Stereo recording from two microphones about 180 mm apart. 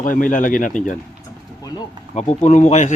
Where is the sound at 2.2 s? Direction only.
40° left (ahead or behind).